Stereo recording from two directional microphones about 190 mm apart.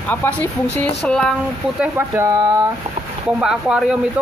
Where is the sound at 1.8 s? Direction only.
10° right (ahead or behind).